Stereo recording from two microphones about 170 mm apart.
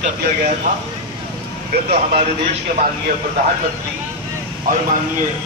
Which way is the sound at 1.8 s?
35° right (ahead or behind).